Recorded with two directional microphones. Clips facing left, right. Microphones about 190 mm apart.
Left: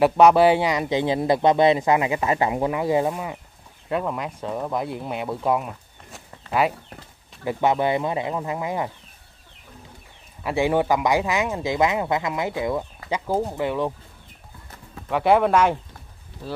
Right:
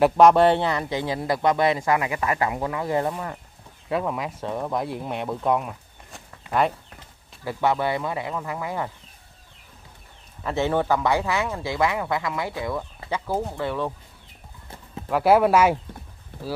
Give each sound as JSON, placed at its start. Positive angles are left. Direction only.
{"t": 0.0, "sound": "speech", "side_deg": 5}
{"t": 3.9, "sound": "speech", "side_deg": 0}
{"t": 7.4, "sound": "speech", "side_deg": 20}
{"t": 10.4, "sound": "speech", "side_deg": 10}
{"t": 15.0, "sound": "speech", "side_deg": 0}